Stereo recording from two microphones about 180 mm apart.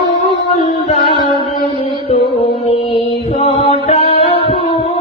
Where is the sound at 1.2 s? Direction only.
25° left (ahead or behind).